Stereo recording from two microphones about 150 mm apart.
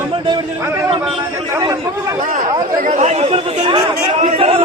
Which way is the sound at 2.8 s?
50° right (ahead or behind).